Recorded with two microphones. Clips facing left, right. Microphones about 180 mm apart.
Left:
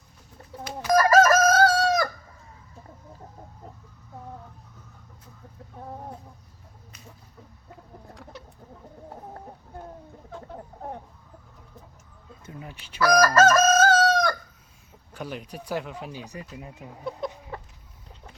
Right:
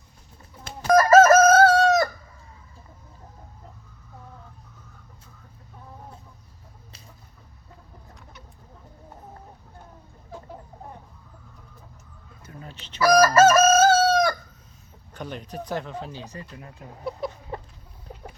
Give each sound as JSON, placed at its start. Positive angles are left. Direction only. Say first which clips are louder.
{"t": 0.9, "sound": "chicken", "louder": "right 4 dB", "side_deg": -25}
{"t": 12.5, "sound": "a sound", "louder": "left 1 dB", "side_deg": 15}
{"t": 13.0, "sound": "chicken", "louder": "right 3 dB", "side_deg": -10}
{"t": 15.1, "sound": "speech", "louder": "right 1 dB", "side_deg": 5}
{"t": 17.1, "sound": "chicken", "louder": "right 1 dB", "side_deg": -5}